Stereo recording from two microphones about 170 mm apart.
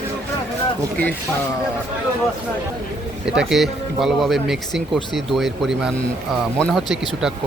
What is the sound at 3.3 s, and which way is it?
Speech, centre (ahead or behind).